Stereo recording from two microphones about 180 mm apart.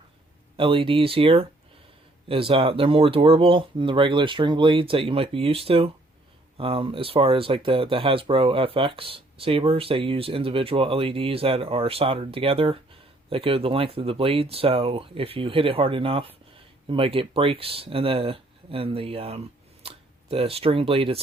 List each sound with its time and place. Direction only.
0.5 s speech: 30° right (ahead or behind)